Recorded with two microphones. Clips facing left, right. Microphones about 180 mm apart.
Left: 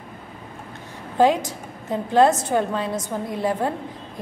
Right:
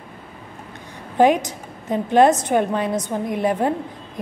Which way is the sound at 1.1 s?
15° right (ahead or behind).